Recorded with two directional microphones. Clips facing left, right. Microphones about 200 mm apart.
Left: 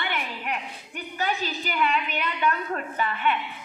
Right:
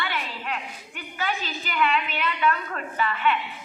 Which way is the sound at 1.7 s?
40° left (ahead or behind).